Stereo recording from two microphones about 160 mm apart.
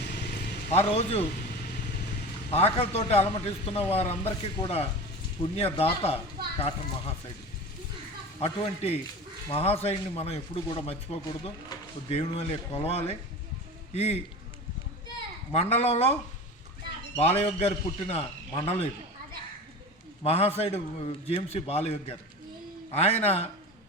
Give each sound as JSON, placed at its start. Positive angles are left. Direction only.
{"t": 0.0, "sound": "a sound", "side_deg": 90}
{"t": 0.7, "sound": "a man's voice", "side_deg": 40}
{"t": 2.5, "sound": "a man's voice", "side_deg": 40}
{"t": 8.4, "sound": "a man's voice", "side_deg": 35}
{"t": 15.5, "sound": "a man's voice", "side_deg": 40}
{"t": 17.2, "sound": "a man's voice", "side_deg": 40}
{"t": 20.2, "sound": "a man's voice", "side_deg": 40}